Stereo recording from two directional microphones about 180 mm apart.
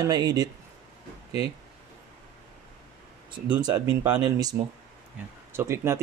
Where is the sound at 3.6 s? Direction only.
20° right (ahead or behind).